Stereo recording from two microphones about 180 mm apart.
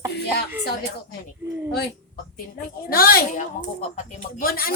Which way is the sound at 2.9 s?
55° left (ahead or behind).